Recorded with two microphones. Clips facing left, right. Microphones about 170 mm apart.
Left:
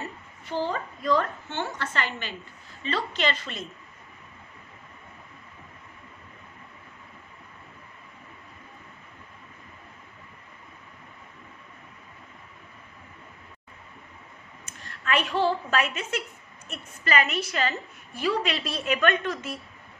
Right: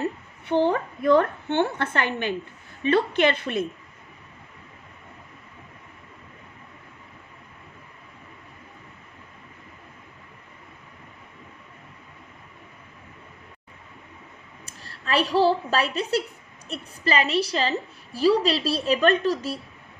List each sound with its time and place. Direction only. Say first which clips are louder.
0.0 s a woman's voice: right 10 dB; 60° right (ahead or behind)
14.7 s a woman's voice: right 2 dB; 35° right (ahead or behind)